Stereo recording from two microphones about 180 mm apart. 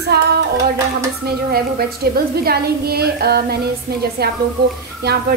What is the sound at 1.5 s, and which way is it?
A woman's voice, 60° right (ahead or behind).